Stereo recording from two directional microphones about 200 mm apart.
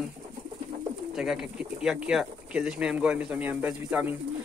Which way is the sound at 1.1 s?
5° right (ahead or behind).